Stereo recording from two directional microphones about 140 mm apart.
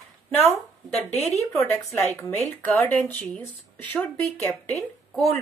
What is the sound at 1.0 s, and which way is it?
Speech, 50° left (ahead or behind).